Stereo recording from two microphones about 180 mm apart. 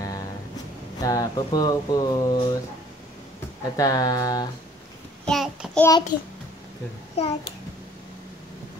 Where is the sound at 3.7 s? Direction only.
20° left (ahead or behind).